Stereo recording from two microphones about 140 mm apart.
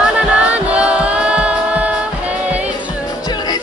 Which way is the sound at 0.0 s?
10° right (ahead or behind).